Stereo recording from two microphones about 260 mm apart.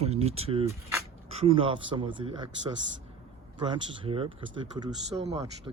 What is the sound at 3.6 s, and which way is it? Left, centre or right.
Speech, centre.